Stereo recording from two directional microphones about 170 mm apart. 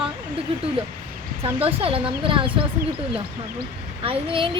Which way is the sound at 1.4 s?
35° right (ahead or behind).